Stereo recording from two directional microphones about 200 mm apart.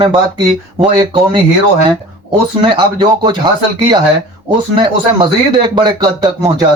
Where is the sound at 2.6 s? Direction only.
25° right (ahead or behind).